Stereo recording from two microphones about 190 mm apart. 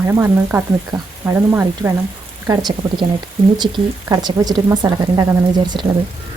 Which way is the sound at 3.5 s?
20° right (ahead or behind).